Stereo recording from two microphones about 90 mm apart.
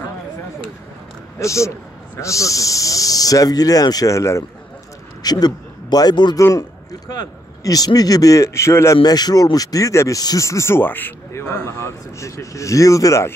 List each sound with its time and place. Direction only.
1.4 s speech: 35° left (ahead or behind)
5.2 s a man's voice: 50° left (ahead or behind)
6.3 s speech: 40° left (ahead or behind)
8.9 s speech: 50° left (ahead or behind)